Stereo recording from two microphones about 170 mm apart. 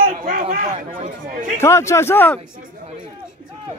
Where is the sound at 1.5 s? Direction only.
15° left (ahead or behind).